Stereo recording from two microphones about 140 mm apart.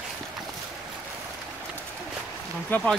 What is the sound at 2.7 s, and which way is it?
Speech, 5° left (ahead or behind).